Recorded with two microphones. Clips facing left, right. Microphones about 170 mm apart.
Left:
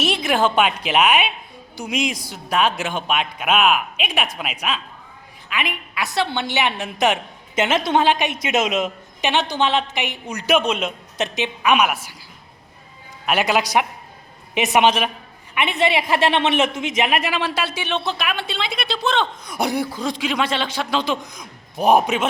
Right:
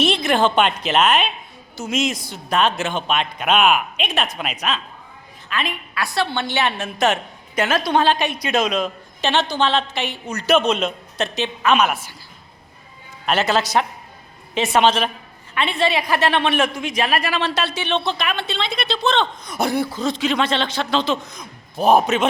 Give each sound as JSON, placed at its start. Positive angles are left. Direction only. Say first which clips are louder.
{"t": 0.0, "sound": "a woman's voice", "louder": "right 2 dB", "side_deg": 10}
{"t": 13.2, "sound": "a woman's voice", "louder": "even", "side_deg": 15}